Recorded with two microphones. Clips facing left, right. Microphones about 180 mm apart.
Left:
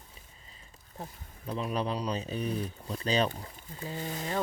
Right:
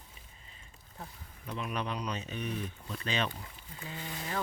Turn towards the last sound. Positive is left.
turn(degrees=30)  # may be behind; listen again after turning